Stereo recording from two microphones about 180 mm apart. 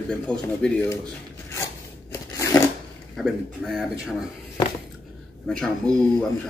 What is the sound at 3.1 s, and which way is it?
A man's voice, centre (ahead or behind).